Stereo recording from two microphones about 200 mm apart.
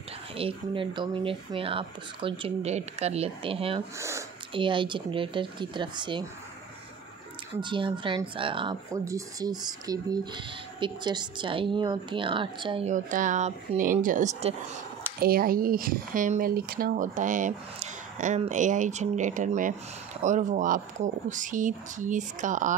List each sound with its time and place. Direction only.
0.4 s speech: 25° right (ahead or behind)
7.6 s speech: 25° right (ahead or behind)
12.9 s speech: 40° right (ahead or behind)